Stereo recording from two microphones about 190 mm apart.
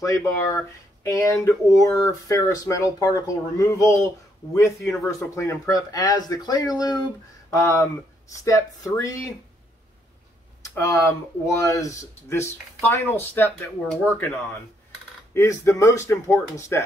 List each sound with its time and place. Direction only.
0.0 s speech: 15° left (ahead or behind)
10.6 s speech: 15° left (ahead or behind)